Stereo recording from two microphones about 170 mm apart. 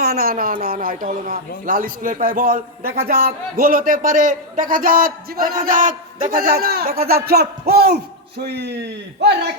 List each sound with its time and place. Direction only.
0.0 s a man's voice: 65° right (ahead or behind)